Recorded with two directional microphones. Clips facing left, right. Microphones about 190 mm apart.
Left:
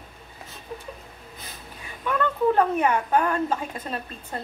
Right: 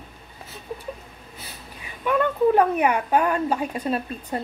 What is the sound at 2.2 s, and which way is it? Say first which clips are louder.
Speech: right 3 dB; 15° right (ahead or behind).